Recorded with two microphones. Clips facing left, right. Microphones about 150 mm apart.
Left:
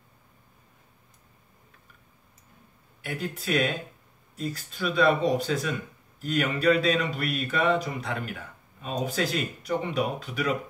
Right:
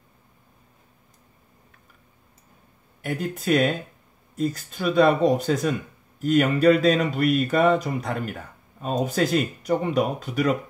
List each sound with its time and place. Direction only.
3.0 s speech: 45° right (ahead or behind)